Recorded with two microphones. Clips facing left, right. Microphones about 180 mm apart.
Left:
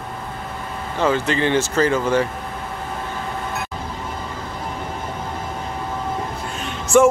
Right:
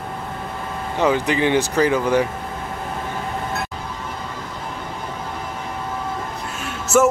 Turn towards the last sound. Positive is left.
turn(degrees=-5)  # may be behind; listen again after turning